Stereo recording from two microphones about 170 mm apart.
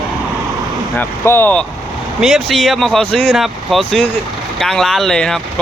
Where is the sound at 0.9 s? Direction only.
15° left (ahead or behind).